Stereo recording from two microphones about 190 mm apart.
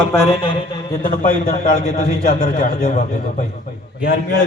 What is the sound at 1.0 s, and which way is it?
A man's voice, 45° left (ahead or behind).